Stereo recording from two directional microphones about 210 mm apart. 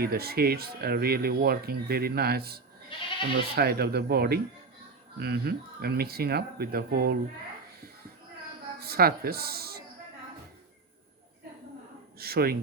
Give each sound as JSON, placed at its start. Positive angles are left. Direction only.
{"t": 0.0, "sound": "speech", "side_deg": -45}
{"t": 8.8, "sound": "speech", "side_deg": -45}
{"t": 12.2, "sound": "speech", "side_deg": -45}